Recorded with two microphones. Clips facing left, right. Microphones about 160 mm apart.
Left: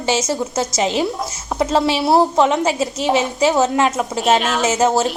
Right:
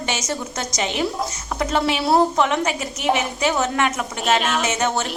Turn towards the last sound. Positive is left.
turn(degrees=30)  # may be behind; listen again after turning